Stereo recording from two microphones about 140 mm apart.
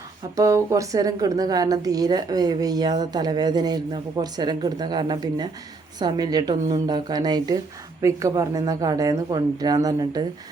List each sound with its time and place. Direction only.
0.3 s a woman's voice: 25° right (ahead or behind)